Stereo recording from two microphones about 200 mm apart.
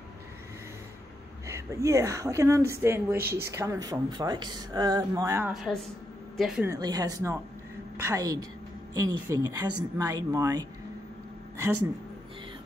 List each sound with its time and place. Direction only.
1.5 s speech: 15° right (ahead or behind)
5.5 s a woman's voice: centre (ahead or behind)
6.7 s speech: 20° right (ahead or behind)